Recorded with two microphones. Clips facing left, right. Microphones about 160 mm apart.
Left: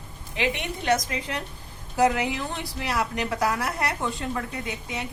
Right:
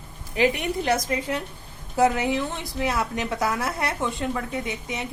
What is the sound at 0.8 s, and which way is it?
A woman's voice, 30° right (ahead or behind).